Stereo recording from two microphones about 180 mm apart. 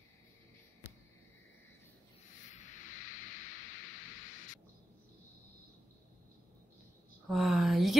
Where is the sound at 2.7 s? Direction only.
45° left (ahead or behind).